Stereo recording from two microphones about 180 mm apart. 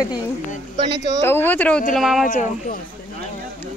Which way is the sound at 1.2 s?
10° left (ahead or behind).